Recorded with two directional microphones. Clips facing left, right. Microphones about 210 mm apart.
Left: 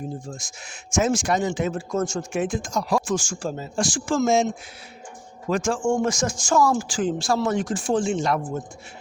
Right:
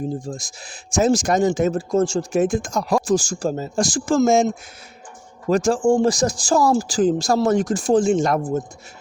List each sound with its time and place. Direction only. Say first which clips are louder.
0.3 s speech: right 6 dB; 35° right (ahead or behind)
2.4 s speech: right 4 dB; 50° right (ahead or behind)